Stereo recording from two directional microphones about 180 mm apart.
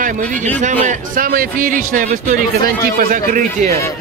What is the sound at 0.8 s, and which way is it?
Speech, 50° right (ahead or behind).